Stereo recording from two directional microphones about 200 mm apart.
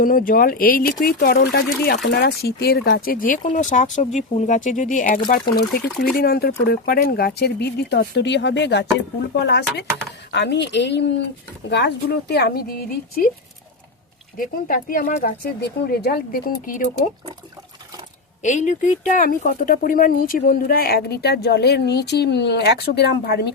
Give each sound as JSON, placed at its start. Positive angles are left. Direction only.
{"t": 0.0, "sound": "speech", "side_deg": 45}
{"t": 14.3, "sound": "speech", "side_deg": 45}
{"t": 18.4, "sound": "speech", "side_deg": 35}